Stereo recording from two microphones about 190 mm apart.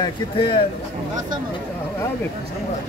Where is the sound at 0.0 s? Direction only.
25° left (ahead or behind).